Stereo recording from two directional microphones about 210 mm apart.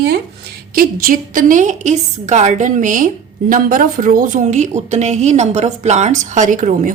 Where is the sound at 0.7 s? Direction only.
45° right (ahead or behind).